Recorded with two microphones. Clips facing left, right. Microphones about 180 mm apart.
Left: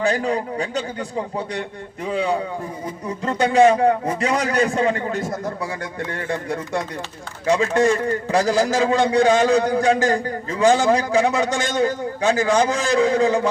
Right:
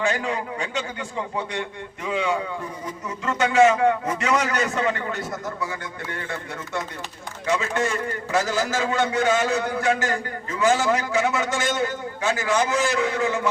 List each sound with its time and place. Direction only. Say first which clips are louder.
0.0 s a man's voice: left 4 dB; 35° left (ahead or behind)